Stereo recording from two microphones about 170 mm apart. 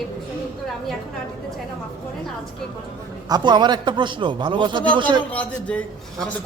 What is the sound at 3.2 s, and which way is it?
A man's voice, 25° right (ahead or behind).